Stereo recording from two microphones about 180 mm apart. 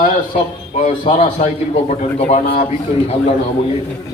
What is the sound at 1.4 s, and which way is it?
A man's voice, 45° left (ahead or behind).